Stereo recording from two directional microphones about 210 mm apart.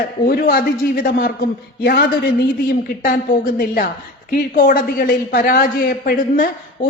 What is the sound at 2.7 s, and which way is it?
A man's voice, 40° left (ahead or behind).